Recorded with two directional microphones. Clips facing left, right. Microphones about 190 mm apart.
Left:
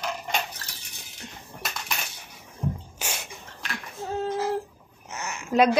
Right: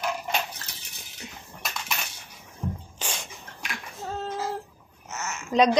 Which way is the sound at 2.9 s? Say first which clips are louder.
Even; 10° left (ahead or behind).